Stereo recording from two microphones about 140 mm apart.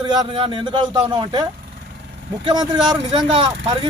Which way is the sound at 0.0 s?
30° right (ahead or behind).